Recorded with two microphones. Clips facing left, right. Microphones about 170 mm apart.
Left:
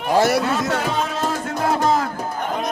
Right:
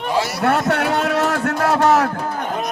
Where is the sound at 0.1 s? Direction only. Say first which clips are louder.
Left 6 dB; 50° left (ahead or behind).